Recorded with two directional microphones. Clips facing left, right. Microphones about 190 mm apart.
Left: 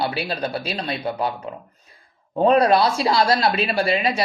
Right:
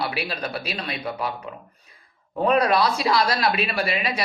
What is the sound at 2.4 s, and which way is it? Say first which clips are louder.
Speech: left 4 dB; 30° left (ahead or behind).